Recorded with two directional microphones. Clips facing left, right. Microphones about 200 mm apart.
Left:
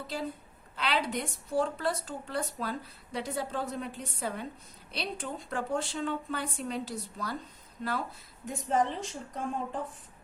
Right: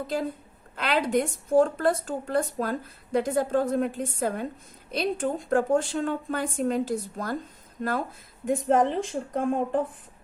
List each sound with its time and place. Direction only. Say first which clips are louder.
0.8 s a woman's voice: right 7 dB; 50° right (ahead or behind)